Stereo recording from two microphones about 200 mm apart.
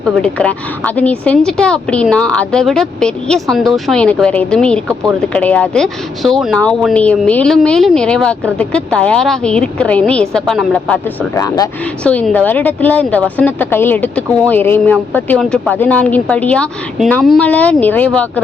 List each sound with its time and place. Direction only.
0.0 s speech: 5° left (ahead or behind)
11.3 s a woman's voice: 15° left (ahead or behind)
12.0 s a woman's voice: 5° left (ahead or behind)